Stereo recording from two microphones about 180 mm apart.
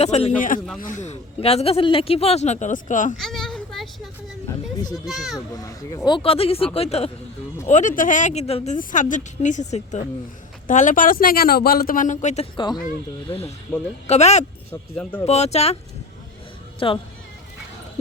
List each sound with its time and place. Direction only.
0.0 s speech: 35° left (ahead or behind)
3.2 s a sound: centre (ahead or behind)
5.0 s a child's voice: centre (ahead or behind)
5.5 s speech: 20° left (ahead or behind); by 12.5 s 40° left (ahead or behind)
12.5 s speech: 25° left (ahead or behind)
13.7 s speech: 10° left (ahead or behind)
14.1 s speech: 40° left (ahead or behind)
14.7 s speech: 10° left (ahead or behind)
15.3 s speech: 35° left (ahead or behind)
16.8 s speech: 30° left (ahead or behind)